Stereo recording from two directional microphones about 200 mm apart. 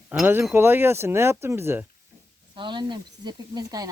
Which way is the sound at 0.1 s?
10° right (ahead or behind).